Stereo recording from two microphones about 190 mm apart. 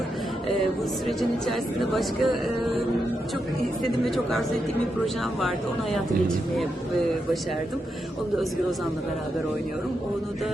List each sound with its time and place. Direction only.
1.0 s speech: centre (ahead or behind)
4.0 s speech: centre (ahead or behind)